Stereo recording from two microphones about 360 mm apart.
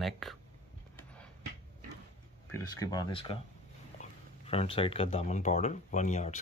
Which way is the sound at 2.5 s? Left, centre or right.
Centre.